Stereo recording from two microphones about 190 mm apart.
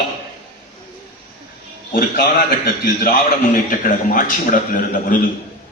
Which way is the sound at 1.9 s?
50° left (ahead or behind).